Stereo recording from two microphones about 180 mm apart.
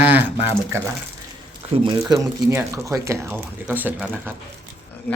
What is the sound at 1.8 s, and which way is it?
Speech, 20° right (ahead or behind).